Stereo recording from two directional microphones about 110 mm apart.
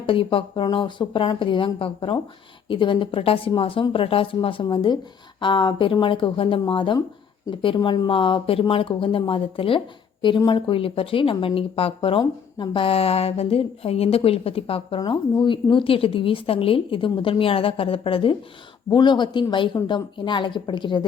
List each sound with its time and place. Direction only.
0.0 s a woman's voice: 55° left (ahead or behind)
18.9 s speech: 45° left (ahead or behind)